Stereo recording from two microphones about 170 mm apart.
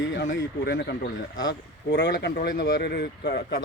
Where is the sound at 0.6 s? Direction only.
75° left (ahead or behind).